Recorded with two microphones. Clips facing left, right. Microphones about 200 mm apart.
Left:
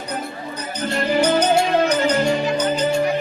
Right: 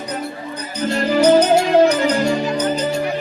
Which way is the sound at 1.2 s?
40° right (ahead or behind).